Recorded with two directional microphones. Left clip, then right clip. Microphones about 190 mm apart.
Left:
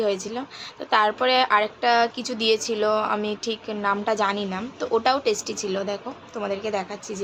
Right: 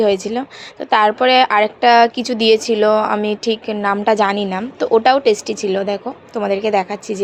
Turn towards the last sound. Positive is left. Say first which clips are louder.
# right 11 dB
turn(degrees=-35)  # may be behind; listen again after turning